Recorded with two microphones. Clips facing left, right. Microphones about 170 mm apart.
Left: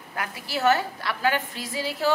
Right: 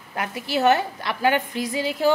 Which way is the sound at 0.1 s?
20° right (ahead or behind).